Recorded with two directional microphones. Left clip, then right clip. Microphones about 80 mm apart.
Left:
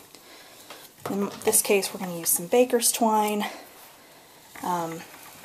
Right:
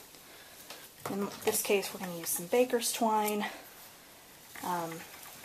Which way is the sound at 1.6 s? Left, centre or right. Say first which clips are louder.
Left 7 dB; left.